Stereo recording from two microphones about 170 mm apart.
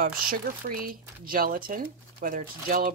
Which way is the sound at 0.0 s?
60° right (ahead or behind).